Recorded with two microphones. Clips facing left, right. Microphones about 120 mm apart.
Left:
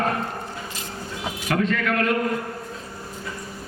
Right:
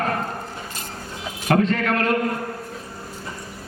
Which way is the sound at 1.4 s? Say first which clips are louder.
Right 4 dB; 40° right (ahead or behind).